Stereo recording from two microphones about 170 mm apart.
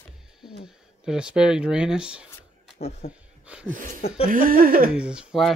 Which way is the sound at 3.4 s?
5° right (ahead or behind).